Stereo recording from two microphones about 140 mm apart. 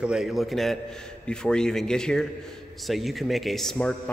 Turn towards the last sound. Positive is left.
turn(degrees=5)  # may be behind; listen again after turning